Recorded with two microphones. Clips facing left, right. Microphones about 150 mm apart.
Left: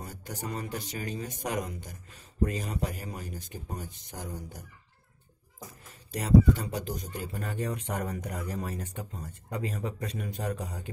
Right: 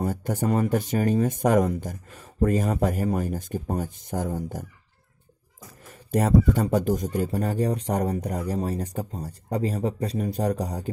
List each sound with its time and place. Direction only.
0.0 s speech: 50° right (ahead or behind)
6.1 s speech: 50° right (ahead or behind)